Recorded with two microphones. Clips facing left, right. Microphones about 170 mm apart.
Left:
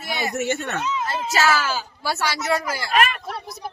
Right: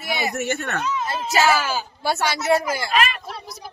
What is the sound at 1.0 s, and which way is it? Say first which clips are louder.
Speech: right 2 dB; 15° right (ahead or behind).